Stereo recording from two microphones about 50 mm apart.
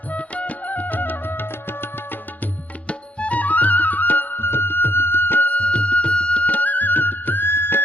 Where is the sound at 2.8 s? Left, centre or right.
Left.